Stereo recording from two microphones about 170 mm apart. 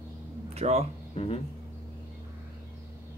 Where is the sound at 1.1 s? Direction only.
35° left (ahead or behind).